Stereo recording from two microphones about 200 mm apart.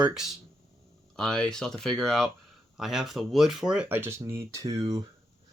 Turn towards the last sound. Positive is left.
turn(degrees=-20)  # may be behind; listen again after turning